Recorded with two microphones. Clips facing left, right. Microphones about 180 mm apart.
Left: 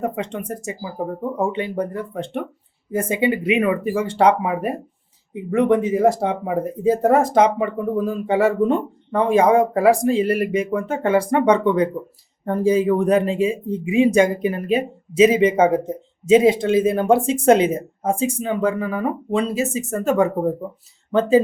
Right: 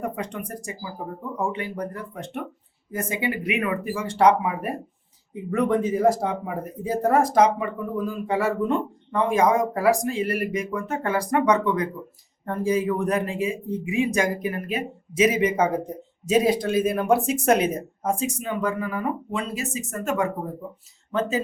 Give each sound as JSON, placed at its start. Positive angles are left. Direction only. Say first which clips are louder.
{"t": 0.0, "sound": "speech", "louder": "left 5 dB", "side_deg": 25}